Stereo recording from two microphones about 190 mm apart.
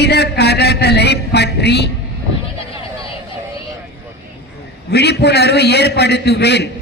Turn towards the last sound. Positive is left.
turn(degrees=60)  # may be behind; listen again after turning